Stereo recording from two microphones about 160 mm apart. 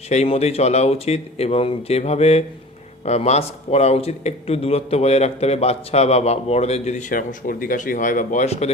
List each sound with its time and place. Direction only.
0.1 s speech: 40° left (ahead or behind)